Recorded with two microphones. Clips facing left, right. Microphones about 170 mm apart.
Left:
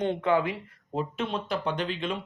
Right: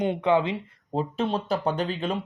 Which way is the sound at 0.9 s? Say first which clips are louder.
Right 4 dB; 35° right (ahead or behind).